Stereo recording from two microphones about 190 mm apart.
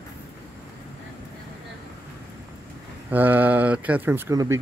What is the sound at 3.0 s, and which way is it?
Speech, 10° right (ahead or behind).